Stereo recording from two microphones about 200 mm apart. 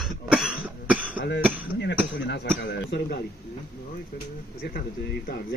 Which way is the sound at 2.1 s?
60° left (ahead or behind).